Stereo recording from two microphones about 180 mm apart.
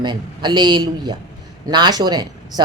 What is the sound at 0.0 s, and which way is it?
Speech, 25° right (ahead or behind).